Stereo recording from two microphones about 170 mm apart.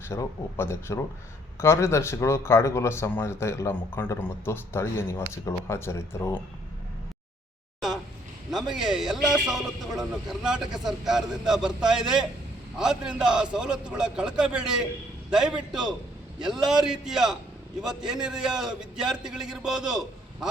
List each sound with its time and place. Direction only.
0.1 s speech: 15° left (ahead or behind)
8.4 s a man's voice: 5° right (ahead or behind)